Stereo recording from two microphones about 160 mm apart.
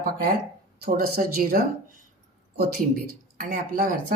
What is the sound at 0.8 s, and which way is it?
Speech, 65° right (ahead or behind).